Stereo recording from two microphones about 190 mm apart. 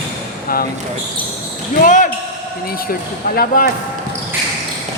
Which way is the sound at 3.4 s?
45° left (ahead or behind).